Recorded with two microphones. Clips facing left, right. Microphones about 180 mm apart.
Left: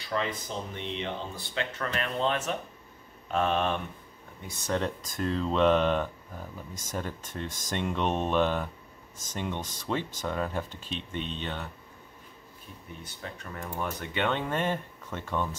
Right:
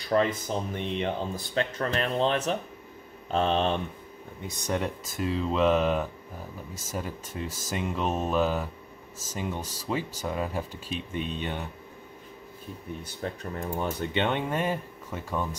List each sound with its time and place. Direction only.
0.1 s speech: 45° right (ahead or behind)
4.5 s speech: 15° right (ahead or behind)
13.2 s speech: 35° right (ahead or behind)
13.6 s speech: 25° right (ahead or behind)
14.5 s speech: 10° right (ahead or behind)